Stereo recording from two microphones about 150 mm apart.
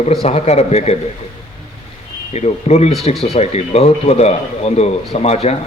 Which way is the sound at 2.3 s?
45° left (ahead or behind).